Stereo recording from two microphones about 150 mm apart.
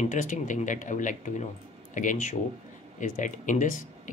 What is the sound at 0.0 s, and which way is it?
Speech, 55° left (ahead or behind).